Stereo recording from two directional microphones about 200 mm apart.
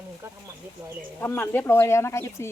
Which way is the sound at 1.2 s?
10° left (ahead or behind).